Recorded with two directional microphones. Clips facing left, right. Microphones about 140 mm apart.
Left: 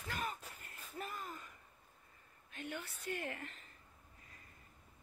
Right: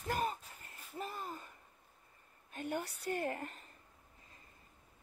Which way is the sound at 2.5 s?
40° right (ahead or behind).